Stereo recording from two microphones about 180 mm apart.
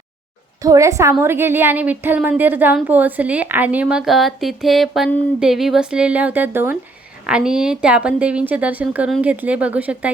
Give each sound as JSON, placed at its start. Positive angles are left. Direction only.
{"t": 0.6, "sound": "speech", "side_deg": -20}